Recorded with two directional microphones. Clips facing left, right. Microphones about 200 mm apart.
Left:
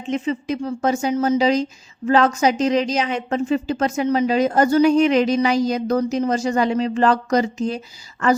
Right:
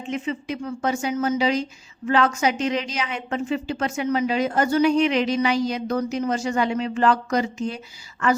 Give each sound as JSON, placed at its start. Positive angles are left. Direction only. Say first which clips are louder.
{"t": 0.1, "sound": "a woman's voice", "louder": "left 5 dB", "side_deg": 40}